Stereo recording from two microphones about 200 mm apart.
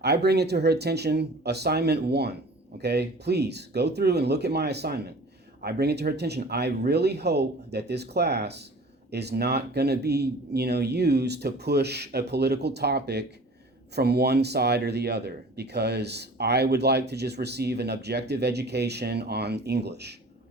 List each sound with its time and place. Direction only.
0.0 s speech: 55° right (ahead or behind)